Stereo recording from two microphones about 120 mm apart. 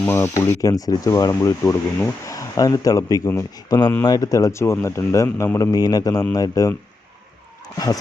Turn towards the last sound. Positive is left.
turn(degrees=30)  # may be behind; listen again after turning